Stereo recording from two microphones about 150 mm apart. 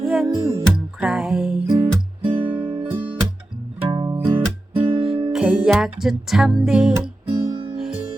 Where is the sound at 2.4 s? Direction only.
10° right (ahead or behind).